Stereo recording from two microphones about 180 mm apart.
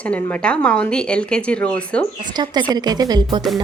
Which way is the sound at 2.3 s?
25° right (ahead or behind).